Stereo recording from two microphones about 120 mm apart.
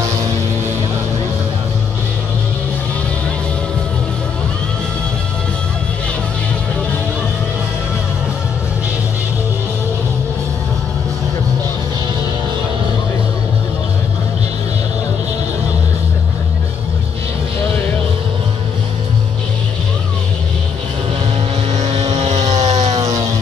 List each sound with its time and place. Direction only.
21.7 s vehicle: 70° right (ahead or behind)